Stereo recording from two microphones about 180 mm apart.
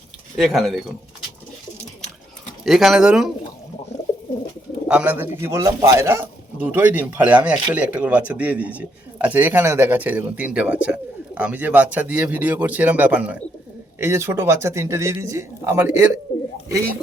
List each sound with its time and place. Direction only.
0.3 s speech: centre (ahead or behind)
2.6 s speech: centre (ahead or behind)
4.9 s speech: 10° right (ahead or behind)